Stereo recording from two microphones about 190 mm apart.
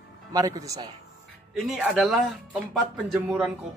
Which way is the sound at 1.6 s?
5° right (ahead or behind).